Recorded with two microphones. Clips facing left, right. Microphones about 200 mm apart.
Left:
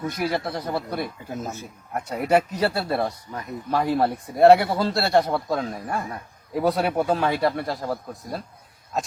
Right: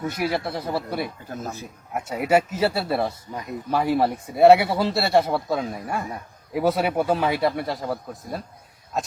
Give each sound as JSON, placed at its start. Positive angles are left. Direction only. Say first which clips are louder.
{"t": 0.2, "sound": "speech", "louder": "even", "side_deg": -5}
{"t": 1.3, "sound": "speech", "louder": "left 1 dB", "side_deg": 10}
{"t": 1.6, "sound": "speech", "louder": "right 1 dB", "side_deg": -5}